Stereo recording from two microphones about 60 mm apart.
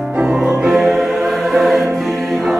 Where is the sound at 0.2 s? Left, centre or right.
Centre.